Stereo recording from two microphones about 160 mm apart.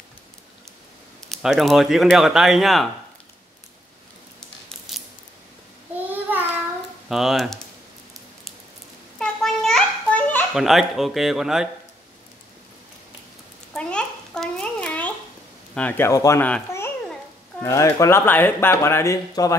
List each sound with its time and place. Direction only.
1.3 s speech: centre (ahead or behind)
4.9 s scissors: centre (ahead or behind)
7.1 s speech: centre (ahead or behind)
9.2 s a sound: centre (ahead or behind)
10.5 s speech: centre (ahead or behind)
13.7 s a sound: 5° left (ahead or behind)
15.7 s speech: 10° left (ahead or behind)
16.4 s babbling: 10° left (ahead or behind)
17.6 s speech: 20° left (ahead or behind)